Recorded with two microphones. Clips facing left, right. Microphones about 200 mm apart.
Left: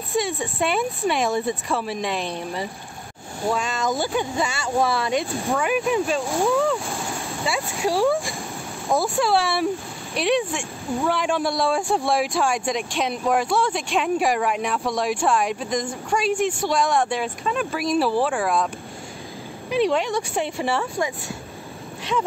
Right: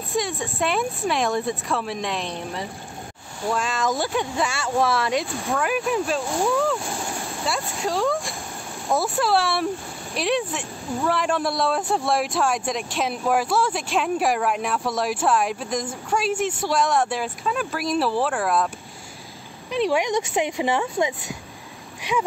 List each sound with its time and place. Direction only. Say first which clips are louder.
0.1 s speech: left 2 dB; centre (ahead or behind)
7.8 s speech: left 4 dB; 15° left (ahead or behind)
8.1 s speech: left 3 dB; centre (ahead or behind)
19.9 s speech: right 1 dB; 15° right (ahead or behind)